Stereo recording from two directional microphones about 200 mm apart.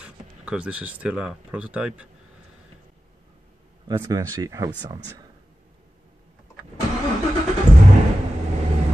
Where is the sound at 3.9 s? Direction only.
20° right (ahead or behind).